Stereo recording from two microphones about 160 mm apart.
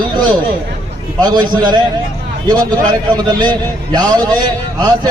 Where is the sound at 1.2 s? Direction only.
25° right (ahead or behind).